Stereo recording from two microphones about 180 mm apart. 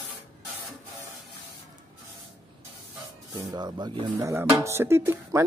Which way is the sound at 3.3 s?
25° right (ahead or behind).